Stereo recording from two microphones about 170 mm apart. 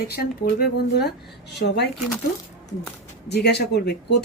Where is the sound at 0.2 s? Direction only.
65° left (ahead or behind).